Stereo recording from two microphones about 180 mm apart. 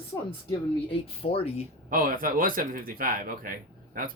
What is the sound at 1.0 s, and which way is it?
Speech, 30° left (ahead or behind).